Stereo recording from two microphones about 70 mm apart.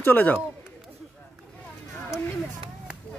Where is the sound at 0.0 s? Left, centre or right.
Left.